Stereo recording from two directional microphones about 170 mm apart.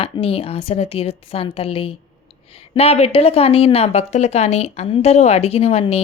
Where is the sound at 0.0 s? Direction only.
35° left (ahead or behind).